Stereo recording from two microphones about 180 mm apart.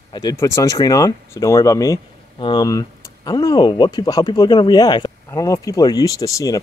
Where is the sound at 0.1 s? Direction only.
20° left (ahead or behind).